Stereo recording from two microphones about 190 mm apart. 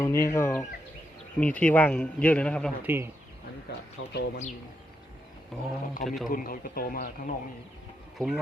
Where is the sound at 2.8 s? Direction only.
10° right (ahead or behind).